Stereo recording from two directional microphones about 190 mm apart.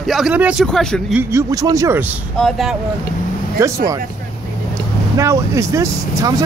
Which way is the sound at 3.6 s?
15° right (ahead or behind).